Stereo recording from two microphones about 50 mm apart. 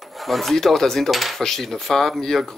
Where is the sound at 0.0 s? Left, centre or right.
Centre.